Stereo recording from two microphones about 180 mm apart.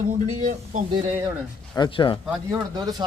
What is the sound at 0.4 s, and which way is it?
Speech, 45° right (ahead or behind).